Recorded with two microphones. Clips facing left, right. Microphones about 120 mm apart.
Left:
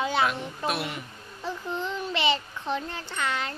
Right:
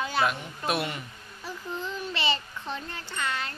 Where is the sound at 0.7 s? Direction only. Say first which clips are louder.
Right 1 dB; centre (ahead or behind).